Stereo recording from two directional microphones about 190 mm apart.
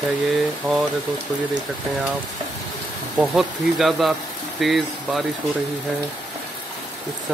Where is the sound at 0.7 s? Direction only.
15° right (ahead or behind).